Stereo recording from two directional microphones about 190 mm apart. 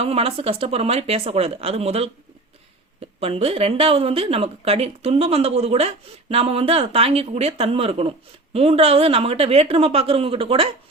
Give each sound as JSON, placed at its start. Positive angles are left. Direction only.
{"t": 0.0, "sound": "speech", "side_deg": -30}
{"t": 3.2, "sound": "speech", "side_deg": -30}